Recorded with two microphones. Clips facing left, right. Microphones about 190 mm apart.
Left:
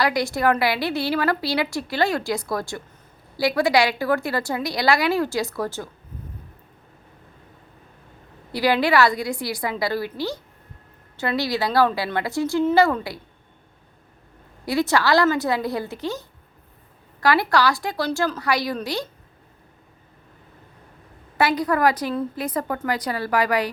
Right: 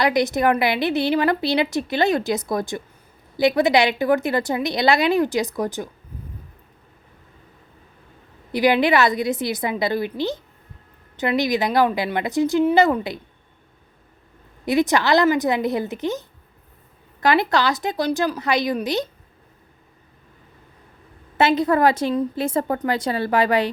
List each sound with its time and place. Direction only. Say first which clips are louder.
0.0 s a woman's voice: right 2 dB; 20° right (ahead or behind)
8.5 s a woman's voice: right 2 dB; 20° right (ahead or behind)
14.6 s a woman's voice: right 2 dB; 20° right (ahead or behind)
21.3 s a woman's voice: right 3 dB; 25° right (ahead or behind)